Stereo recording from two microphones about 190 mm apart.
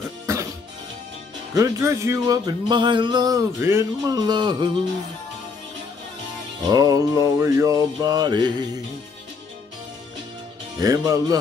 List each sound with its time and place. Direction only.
0.3 s music: 15° right (ahead or behind)
1.5 s speech: 15° right (ahead or behind)
6.6 s speech: 20° right (ahead or behind)
10.8 s speech: 20° right (ahead or behind)